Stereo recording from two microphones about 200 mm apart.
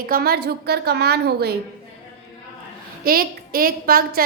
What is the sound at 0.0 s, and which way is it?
A woman's voice, 50° right (ahead or behind).